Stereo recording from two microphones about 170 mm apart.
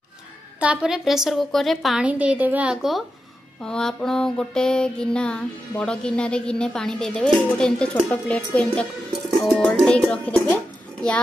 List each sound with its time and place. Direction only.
0.6 s music: 5° right (ahead or behind)
8.1 s a child's voice: 10° left (ahead or behind)